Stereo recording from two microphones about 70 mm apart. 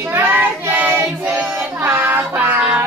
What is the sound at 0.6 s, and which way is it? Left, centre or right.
Child singing, right.